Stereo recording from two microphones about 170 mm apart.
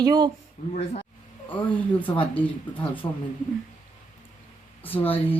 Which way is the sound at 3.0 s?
20° left (ahead or behind).